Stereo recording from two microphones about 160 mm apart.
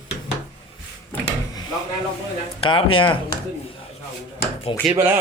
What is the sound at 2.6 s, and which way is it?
Speech, 35° left (ahead or behind).